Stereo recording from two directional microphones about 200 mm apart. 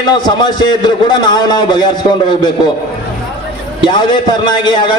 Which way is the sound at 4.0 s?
20° left (ahead or behind).